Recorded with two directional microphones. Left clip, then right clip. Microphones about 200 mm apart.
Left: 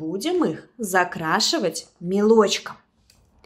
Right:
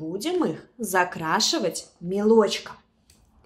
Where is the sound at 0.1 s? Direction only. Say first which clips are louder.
Left 3 dB; 25° left (ahead or behind).